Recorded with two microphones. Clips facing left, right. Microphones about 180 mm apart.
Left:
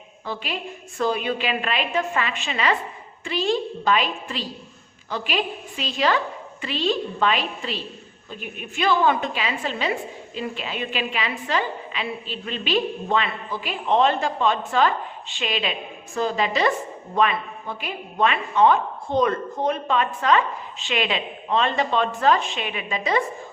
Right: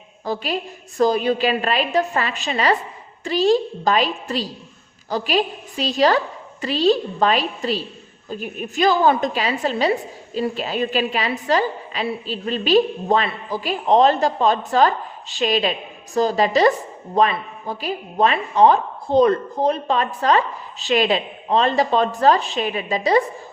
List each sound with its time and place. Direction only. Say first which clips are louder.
0.3 s a woman's voice: right 6 dB; 40° right (ahead or behind)